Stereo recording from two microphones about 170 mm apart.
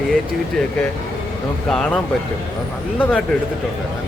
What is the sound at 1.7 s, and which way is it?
Speech, 5° left (ahead or behind).